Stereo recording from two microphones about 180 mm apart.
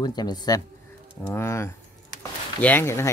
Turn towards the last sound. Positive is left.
turn(degrees=15)  # may be behind; listen again after turning